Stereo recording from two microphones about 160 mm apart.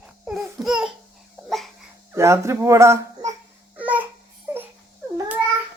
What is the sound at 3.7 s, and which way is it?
Babbling, 10° right (ahead or behind).